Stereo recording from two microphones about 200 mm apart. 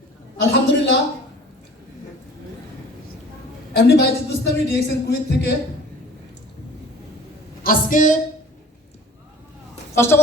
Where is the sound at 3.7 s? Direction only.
55° left (ahead or behind).